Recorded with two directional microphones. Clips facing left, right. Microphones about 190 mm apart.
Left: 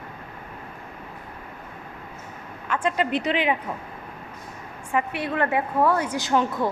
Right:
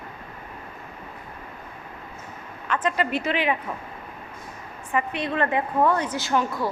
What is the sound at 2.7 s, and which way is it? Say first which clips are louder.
Speech: left 1 dB; 10° left (ahead or behind).